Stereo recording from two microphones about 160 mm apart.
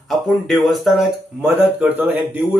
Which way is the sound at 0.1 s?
Centre (ahead or behind).